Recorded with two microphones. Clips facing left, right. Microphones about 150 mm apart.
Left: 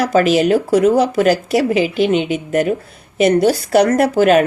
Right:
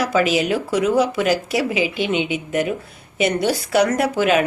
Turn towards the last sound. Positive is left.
turn(degrees=45)  # may be behind; listen again after turning